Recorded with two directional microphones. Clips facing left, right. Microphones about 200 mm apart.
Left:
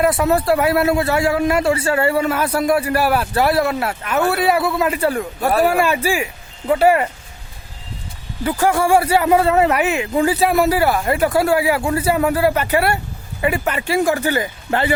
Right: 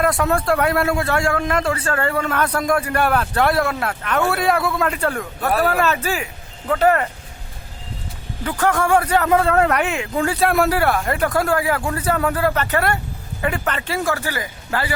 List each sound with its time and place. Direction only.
0.0 s a man's voice: 5° left (ahead or behind)
8.4 s a man's voice: 10° left (ahead or behind)